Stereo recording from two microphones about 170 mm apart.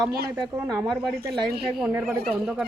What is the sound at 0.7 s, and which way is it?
Speech, 20° right (ahead or behind).